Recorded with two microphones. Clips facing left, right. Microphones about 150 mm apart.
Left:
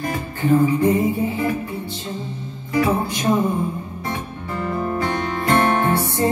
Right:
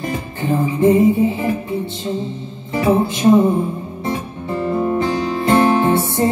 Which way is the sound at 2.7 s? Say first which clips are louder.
Right 4 dB; 25° right (ahead or behind).